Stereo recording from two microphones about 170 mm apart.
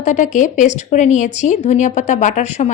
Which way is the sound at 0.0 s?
50° left (ahead or behind).